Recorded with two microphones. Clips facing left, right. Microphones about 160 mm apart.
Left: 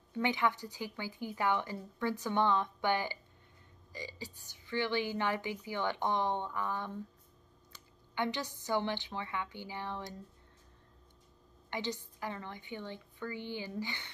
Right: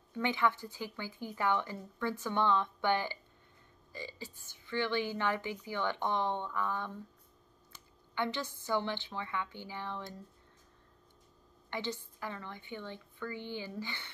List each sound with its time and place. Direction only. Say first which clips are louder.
0.2 s a woman's voice: even; 15° left (ahead or behind)
8.1 s a woman's voice: even; 15° left (ahead or behind)
11.7 s a woman's voice: even; 15° left (ahead or behind)